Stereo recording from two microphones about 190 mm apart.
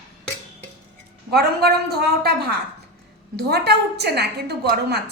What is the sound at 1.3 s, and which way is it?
A woman's voice, 55° right (ahead or behind).